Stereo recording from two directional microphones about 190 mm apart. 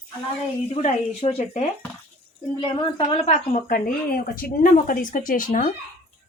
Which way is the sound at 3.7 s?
50° left (ahead or behind).